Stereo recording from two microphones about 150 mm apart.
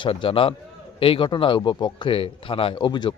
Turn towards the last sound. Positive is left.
turn(degrees=30)  # may be behind; listen again after turning